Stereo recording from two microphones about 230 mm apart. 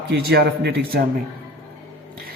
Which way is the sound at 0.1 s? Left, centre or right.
Right.